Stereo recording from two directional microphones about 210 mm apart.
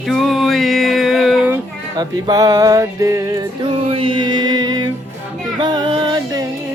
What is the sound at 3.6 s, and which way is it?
Music, 25° right (ahead or behind).